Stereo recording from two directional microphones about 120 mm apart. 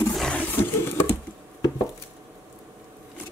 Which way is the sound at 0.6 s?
15° left (ahead or behind).